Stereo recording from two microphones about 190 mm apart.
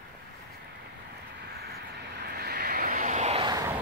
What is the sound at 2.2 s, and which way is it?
Vehicle, 55° right (ahead or behind).